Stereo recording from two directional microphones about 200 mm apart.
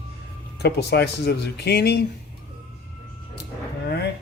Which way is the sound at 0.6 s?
55° left (ahead or behind).